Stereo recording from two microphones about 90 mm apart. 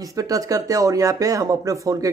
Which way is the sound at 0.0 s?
40° right (ahead or behind).